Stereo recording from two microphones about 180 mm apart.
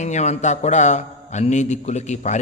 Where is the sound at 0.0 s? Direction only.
40° left (ahead or behind).